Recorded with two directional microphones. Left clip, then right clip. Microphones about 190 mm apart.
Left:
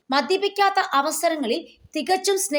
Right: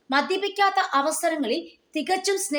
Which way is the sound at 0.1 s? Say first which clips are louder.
Left 2 dB; 30° left (ahead or behind).